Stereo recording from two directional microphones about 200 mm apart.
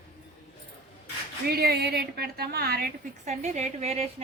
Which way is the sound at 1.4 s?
50° right (ahead or behind).